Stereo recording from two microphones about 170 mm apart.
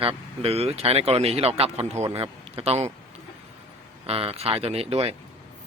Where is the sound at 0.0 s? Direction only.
35° right (ahead or behind).